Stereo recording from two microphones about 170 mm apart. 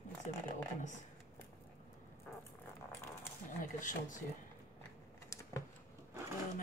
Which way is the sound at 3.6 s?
50° left (ahead or behind).